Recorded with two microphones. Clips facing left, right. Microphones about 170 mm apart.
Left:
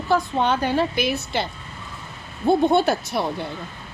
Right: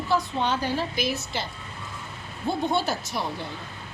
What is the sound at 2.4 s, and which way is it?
Speech, 60° left (ahead or behind).